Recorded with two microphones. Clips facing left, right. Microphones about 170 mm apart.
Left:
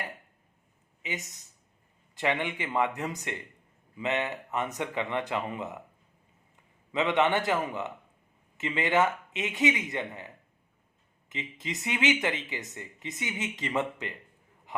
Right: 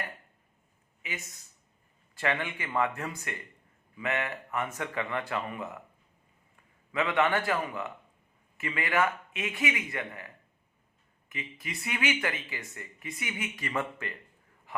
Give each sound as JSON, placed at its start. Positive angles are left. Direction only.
{"t": 1.0, "sound": "speech", "side_deg": 20}
{"t": 6.9, "sound": "speech", "side_deg": 20}
{"t": 14.7, "sound": "a sound", "side_deg": 20}